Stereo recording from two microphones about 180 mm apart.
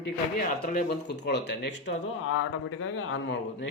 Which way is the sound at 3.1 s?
90° left.